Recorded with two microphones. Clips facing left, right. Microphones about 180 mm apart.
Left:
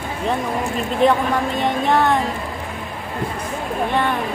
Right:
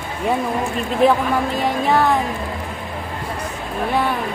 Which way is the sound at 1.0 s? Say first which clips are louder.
Right 1 dB; 5° right (ahead or behind).